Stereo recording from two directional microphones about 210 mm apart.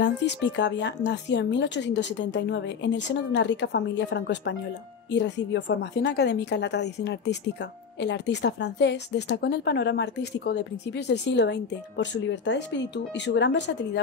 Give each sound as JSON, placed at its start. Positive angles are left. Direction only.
{"t": 0.0, "sound": "a woman's voice", "side_deg": 55}